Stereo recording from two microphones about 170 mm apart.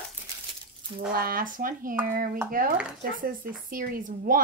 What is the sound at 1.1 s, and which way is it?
Speech, 60° right (ahead or behind).